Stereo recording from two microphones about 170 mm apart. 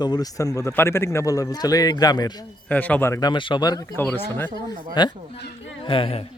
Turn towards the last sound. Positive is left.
turn(degrees=30)  # may be behind; listen again after turning